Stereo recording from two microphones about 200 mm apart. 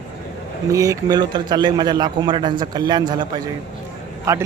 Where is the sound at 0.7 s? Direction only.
15° right (ahead or behind).